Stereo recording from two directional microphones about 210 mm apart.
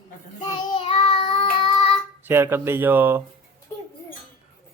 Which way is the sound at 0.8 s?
25° left (ahead or behind).